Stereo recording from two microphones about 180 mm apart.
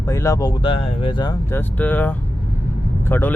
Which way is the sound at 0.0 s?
15° left (ahead or behind).